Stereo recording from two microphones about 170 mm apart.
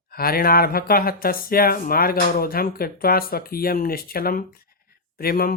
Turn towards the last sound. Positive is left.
turn(degrees=60)  # may be behind; listen again after turning